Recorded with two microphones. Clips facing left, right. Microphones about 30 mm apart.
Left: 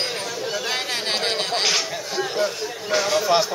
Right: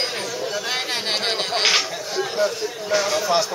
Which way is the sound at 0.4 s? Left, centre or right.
Centre.